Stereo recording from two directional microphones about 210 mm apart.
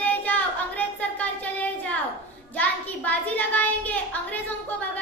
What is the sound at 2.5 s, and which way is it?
A child's voice, 5° left (ahead or behind).